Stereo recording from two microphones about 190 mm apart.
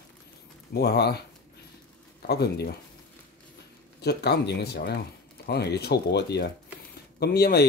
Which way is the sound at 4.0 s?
60° left (ahead or behind).